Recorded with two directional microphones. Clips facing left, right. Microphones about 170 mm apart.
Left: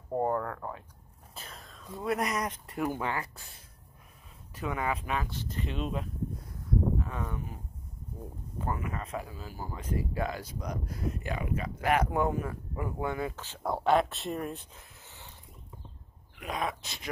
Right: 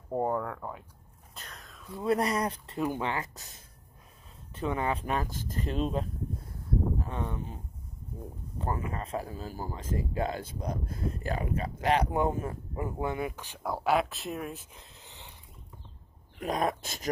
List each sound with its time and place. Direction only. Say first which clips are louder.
0.1 s speech: even; 5° right (ahead or behind)
1.3 s a sound: left 1 dB; 5° left (ahead or behind)
2.0 s speech: right 3 dB; 30° right (ahead or behind)
4.6 s speech: right 2 dB; 30° right (ahead or behind)
10.1 s speech: right 2 dB; 25° right (ahead or behind)
13.6 s speech: left 2 dB; centre (ahead or behind)
14.7 s a sound: right 1 dB; 20° right (ahead or behind)
16.3 s dog: right 5 dB; 45° right (ahead or behind)